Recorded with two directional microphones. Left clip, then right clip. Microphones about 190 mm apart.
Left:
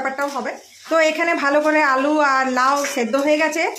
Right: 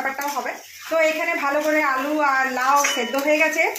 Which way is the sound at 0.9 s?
55° left (ahead or behind).